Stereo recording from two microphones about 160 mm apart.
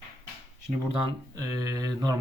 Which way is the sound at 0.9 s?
25° right (ahead or behind).